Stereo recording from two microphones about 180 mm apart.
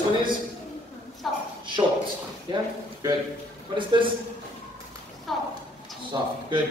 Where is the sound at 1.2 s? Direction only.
Centre (ahead or behind).